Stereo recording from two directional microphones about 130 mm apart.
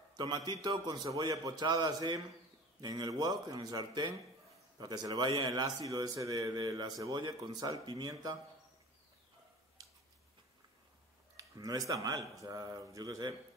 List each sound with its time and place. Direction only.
0.1 s a sound: 30° right (ahead or behind)
0.5 s a man's voice: 30° right (ahead or behind)
11.3 s speech: 25° right (ahead or behind)